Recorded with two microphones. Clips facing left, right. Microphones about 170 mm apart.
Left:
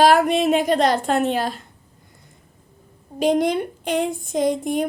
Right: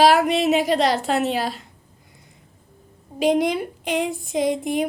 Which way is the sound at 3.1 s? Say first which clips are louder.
Left 1 dB; centre (ahead or behind).